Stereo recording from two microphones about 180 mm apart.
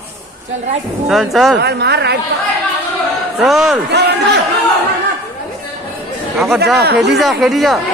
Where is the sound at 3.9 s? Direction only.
70° right (ahead or behind).